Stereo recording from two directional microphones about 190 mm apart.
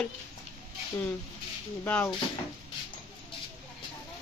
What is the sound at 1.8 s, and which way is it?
Speech, 10° left (ahead or behind).